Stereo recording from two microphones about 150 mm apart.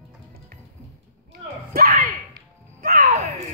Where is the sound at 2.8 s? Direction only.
75° right (ahead or behind).